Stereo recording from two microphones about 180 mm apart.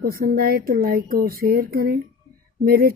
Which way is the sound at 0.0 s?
60° right (ahead or behind).